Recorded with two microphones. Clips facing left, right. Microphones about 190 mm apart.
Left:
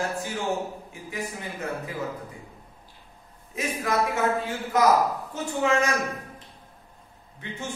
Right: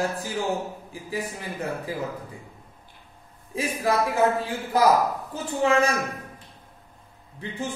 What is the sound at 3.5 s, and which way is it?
A man's voice, 30° right (ahead or behind).